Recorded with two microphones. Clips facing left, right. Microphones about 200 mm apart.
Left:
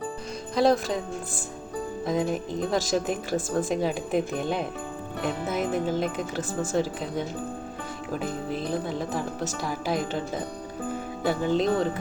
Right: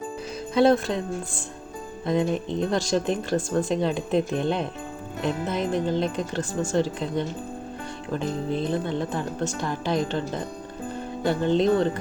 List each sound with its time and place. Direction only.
0.5 s speech: centre (ahead or behind)
2.0 s speech: 5° left (ahead or behind)
8.5 s speech: 5° left (ahead or behind)